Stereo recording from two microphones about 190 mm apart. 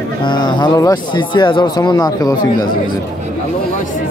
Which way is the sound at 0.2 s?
25° left (ahead or behind).